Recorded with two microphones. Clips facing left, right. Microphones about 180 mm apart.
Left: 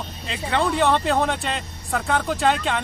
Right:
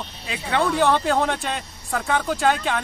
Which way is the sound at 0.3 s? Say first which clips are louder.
Even; centre (ahead or behind).